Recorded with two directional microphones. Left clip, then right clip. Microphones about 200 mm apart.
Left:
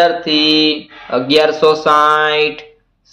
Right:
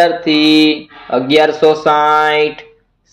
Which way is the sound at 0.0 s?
5° right (ahead or behind).